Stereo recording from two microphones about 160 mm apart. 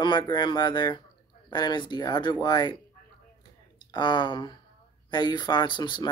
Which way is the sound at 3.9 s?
30° left (ahead or behind).